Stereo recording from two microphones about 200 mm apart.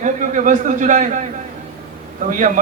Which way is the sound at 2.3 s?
40° right (ahead or behind).